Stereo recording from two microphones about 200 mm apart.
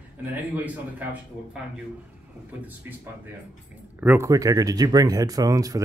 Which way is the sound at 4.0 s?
10° right (ahead or behind).